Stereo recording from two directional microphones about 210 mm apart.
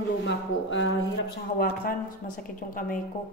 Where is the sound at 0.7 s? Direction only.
65° left (ahead or behind).